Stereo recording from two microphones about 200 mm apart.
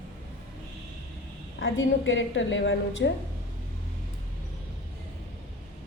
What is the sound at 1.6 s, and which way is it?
A woman's voice, 65° left (ahead or behind).